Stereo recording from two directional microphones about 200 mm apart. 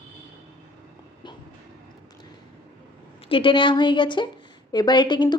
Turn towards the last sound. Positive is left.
turn(degrees=20)  # may be behind; listen again after turning